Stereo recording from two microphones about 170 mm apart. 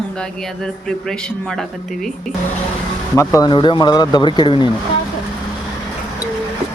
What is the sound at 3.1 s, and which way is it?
Speech, 15° left (ahead or behind).